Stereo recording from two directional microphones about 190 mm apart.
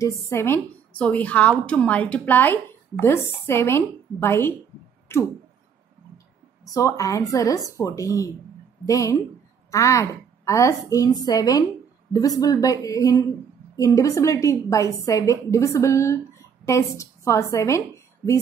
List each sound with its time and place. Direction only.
0.3 s a woman's voice: 10° left (ahead or behind)
5.1 s a sound: 15° left (ahead or behind)
6.6 s a woman's voice: 15° left (ahead or behind)